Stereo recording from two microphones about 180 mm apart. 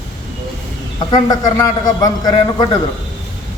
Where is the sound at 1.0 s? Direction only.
20° left (ahead or behind).